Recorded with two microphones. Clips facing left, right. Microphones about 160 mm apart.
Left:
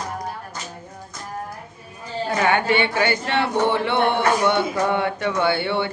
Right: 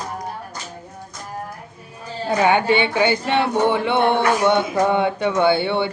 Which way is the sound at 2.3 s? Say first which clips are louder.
Right 3 dB; 15° right (ahead or behind).